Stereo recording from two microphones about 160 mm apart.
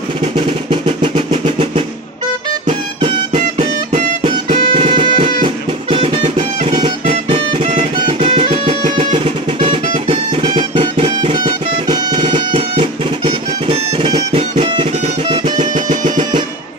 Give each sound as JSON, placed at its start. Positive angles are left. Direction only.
{"t": 0.4, "sound": "drum roll", "side_deg": -30}
{"t": 3.3, "sound": "music", "side_deg": -50}
{"t": 4.7, "sound": "music", "side_deg": -30}
{"t": 15.6, "sound": "music", "side_deg": -50}